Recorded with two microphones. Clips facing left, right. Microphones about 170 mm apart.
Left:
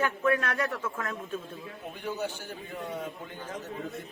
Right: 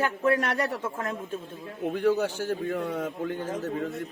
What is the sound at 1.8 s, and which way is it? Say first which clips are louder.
A man's voice: right 10 dB; 80° right.